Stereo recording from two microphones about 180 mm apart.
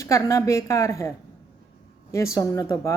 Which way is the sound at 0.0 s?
15° left (ahead or behind).